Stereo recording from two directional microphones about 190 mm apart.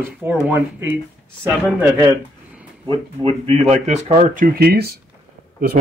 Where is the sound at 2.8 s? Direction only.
25° right (ahead or behind).